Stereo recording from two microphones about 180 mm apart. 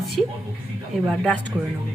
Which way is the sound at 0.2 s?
5° left (ahead or behind).